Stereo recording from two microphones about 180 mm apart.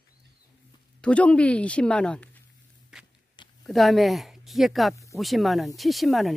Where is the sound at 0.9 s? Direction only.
5° left (ahead or behind).